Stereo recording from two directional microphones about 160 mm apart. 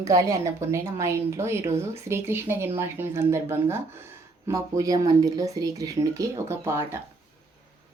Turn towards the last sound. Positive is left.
turn(degrees=-15)  # may be behind; listen again after turning